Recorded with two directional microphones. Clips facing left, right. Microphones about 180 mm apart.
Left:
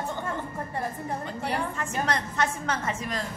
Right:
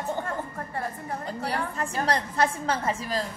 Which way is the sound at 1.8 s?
35° right (ahead or behind).